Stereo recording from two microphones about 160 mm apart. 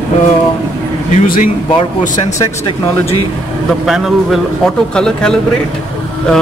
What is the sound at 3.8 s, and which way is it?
A man's voice, centre (ahead or behind).